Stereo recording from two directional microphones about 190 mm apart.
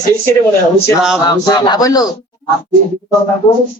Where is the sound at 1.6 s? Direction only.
20° left (ahead or behind).